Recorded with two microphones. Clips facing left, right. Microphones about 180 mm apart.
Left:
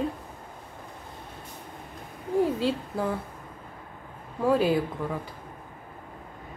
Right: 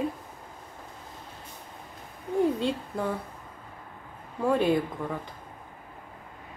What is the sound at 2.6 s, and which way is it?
Speech, 5° left (ahead or behind).